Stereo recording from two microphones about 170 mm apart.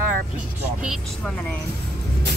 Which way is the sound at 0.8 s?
Centre (ahead or behind).